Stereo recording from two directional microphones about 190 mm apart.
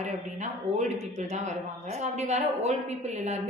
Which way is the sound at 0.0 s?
35° right (ahead or behind).